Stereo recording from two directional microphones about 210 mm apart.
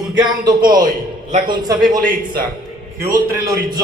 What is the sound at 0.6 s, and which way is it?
Speech, 40° right (ahead or behind).